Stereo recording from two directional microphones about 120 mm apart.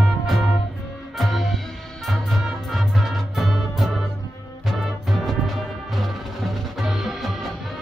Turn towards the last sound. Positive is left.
turn(degrees=0)  # may be behind; listen again after turning